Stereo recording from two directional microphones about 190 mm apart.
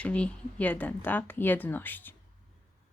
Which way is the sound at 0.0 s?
5° left (ahead or behind).